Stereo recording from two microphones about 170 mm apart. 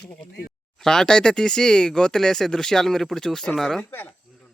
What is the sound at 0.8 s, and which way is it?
Speech, 5° left (ahead or behind).